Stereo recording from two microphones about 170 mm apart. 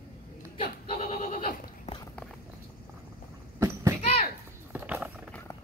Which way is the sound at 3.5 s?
20° right (ahead or behind).